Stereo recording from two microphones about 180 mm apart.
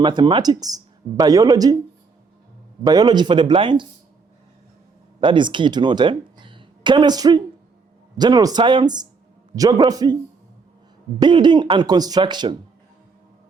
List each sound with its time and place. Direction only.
0.0 s speech: 25° right (ahead or behind)
2.8 s speech: 20° right (ahead or behind)
5.2 s speech: 25° right (ahead or behind)
11.2 s speech: 25° right (ahead or behind)